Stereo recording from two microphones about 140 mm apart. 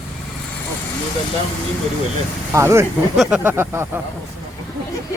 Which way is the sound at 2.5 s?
20° right (ahead or behind).